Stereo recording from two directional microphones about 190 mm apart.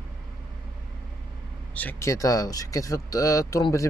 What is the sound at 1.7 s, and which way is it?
Speech, 10° left (ahead or behind).